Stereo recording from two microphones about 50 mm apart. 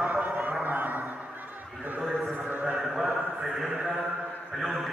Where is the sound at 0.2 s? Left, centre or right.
Right.